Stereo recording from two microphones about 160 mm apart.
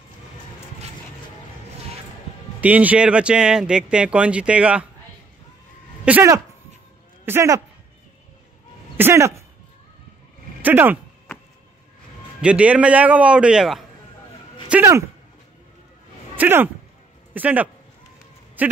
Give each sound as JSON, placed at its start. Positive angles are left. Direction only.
{"t": 2.6, "sound": "speech", "side_deg": -10}
{"t": 6.0, "sound": "speech", "side_deg": -15}
{"t": 8.9, "sound": "speech", "side_deg": -15}
{"t": 10.6, "sound": "speech", "side_deg": -10}
{"t": 12.4, "sound": "speech", "side_deg": -5}
{"t": 14.7, "sound": "speech", "side_deg": -15}
{"t": 16.3, "sound": "speech", "side_deg": -10}